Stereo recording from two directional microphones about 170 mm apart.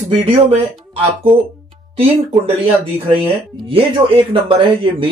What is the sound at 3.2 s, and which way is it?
Speech, 30° right (ahead or behind).